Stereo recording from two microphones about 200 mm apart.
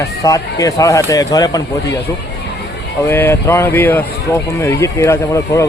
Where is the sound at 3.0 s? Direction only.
10° left (ahead or behind).